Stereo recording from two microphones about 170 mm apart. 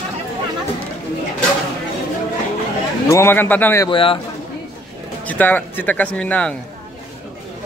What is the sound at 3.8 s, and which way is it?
Speech, 30° left (ahead or behind).